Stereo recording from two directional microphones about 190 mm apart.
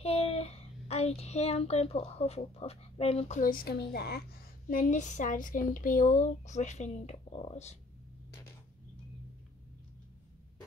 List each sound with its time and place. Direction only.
0.0 s a child's voice: 30° left (ahead or behind)